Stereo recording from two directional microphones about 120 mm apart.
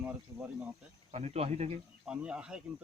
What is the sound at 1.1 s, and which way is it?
Speech, 65° right (ahead or behind).